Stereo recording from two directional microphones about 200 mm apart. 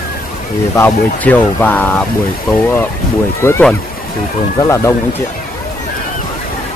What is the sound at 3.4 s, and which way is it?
Speech, 10° left (ahead or behind).